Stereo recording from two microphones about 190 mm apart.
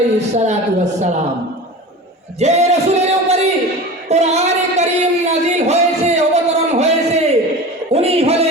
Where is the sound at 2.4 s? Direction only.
35° right (ahead or behind).